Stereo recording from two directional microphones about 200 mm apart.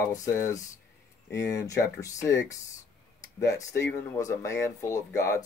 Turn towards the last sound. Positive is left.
turn(degrees=15)  # may be behind; listen again after turning